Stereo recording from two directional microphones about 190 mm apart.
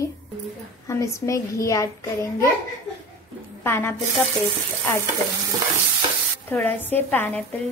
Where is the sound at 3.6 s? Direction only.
10° left (ahead or behind).